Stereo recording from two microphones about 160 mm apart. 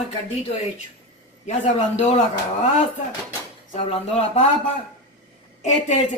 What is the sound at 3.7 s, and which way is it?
Speech, 45° left (ahead or behind).